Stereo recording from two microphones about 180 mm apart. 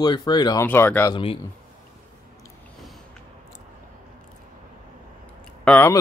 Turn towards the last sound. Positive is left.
turn(degrees=10)  # may be behind; listen again after turning